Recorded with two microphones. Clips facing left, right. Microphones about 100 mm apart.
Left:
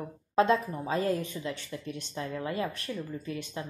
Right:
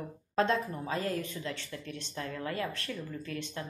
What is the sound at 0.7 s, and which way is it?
Speech, 20° left (ahead or behind).